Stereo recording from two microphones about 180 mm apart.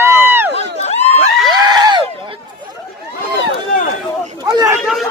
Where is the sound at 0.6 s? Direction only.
35° left (ahead or behind).